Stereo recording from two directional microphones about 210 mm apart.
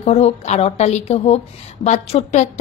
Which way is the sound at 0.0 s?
30° left (ahead or behind).